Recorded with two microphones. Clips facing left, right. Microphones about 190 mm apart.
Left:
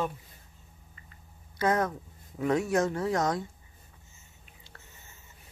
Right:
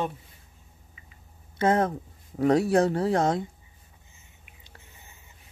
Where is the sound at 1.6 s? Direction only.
30° right (ahead or behind).